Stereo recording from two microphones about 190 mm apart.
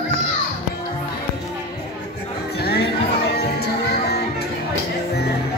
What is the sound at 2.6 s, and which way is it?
Music, 60° left (ahead or behind).